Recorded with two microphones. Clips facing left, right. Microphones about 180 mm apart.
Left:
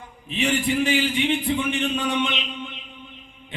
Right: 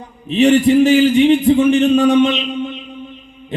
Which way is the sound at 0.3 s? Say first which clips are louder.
Right 12 dB; 40° right (ahead or behind).